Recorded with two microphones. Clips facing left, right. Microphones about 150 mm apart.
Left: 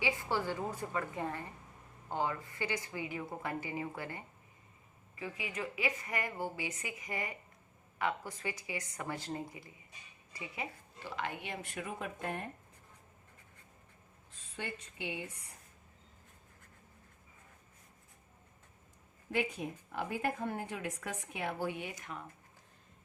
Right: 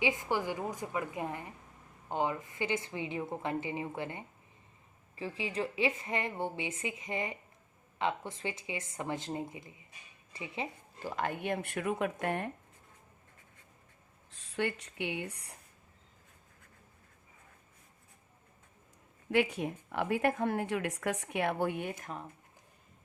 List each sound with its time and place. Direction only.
0.0 s a woman's voice: 20° right (ahead or behind)
11.0 s speech: 45° right (ahead or behind); by 12.5 s 70° right (ahead or behind)
14.3 s speech: 75° right (ahead or behind)
19.3 s a woman's voice: 70° right (ahead or behind); by 22.1 s 55° right (ahead or behind)